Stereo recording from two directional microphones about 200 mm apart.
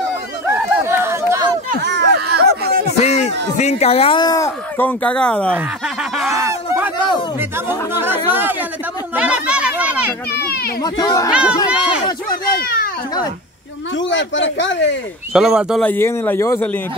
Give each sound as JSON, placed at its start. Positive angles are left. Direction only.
{"t": 0.5, "sound": "chatter", "side_deg": -10}
{"t": 1.8, "sound": "a sound", "side_deg": -60}
{"t": 3.0, "sound": "music", "side_deg": 35}
{"t": 3.5, "sound": "speech", "side_deg": 35}
{"t": 6.4, "sound": "speech", "side_deg": -15}
{"t": 9.1, "sound": "a sound", "side_deg": -5}
{"t": 10.3, "sound": "a child's voice", "side_deg": 50}
{"t": 10.8, "sound": "speech", "side_deg": 20}
{"t": 11.3, "sound": "speech", "side_deg": -5}
{"t": 12.0, "sound": "speech", "side_deg": 20}
{"t": 13.9, "sound": "speech", "side_deg": 65}
{"t": 15.3, "sound": "speech", "side_deg": 0}
{"t": 15.9, "sound": "speech", "side_deg": 10}